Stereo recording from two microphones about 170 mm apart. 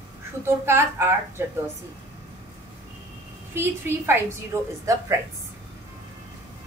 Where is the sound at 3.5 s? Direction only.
15° right (ahead or behind).